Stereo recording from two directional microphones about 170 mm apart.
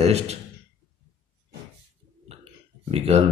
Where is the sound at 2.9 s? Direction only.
35° right (ahead or behind).